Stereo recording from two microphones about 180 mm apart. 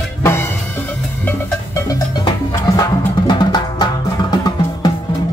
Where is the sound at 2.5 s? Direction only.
20° left (ahead or behind).